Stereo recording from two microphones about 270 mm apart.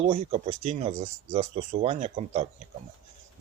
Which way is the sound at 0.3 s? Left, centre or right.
Right.